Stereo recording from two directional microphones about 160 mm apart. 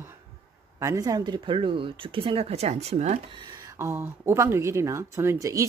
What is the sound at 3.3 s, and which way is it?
Speech, 25° right (ahead or behind).